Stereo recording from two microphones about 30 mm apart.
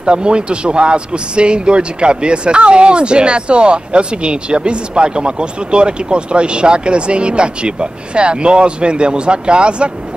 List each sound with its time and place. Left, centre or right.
0.0 s speech: right